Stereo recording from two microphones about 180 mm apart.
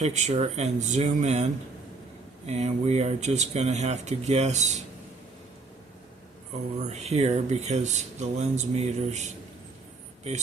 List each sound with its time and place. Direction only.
0.0 s speech: 40° right (ahead or behind)
2.5 s speech: 35° right (ahead or behind)
6.7 s speech: 40° right (ahead or behind)